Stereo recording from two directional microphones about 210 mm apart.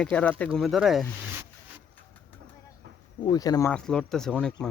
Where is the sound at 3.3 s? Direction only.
15° left (ahead or behind).